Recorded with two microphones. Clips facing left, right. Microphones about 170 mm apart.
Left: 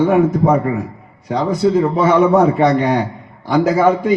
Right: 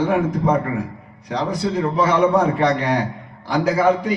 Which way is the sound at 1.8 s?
45° left (ahead or behind).